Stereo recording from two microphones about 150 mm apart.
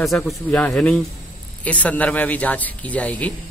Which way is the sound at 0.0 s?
Centre (ahead or behind).